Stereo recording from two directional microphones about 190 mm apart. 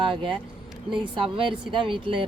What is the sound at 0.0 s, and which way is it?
Speech, 25° right (ahead or behind).